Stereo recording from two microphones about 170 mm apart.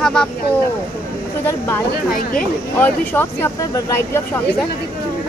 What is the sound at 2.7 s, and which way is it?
Speech, 10° left (ahead or behind).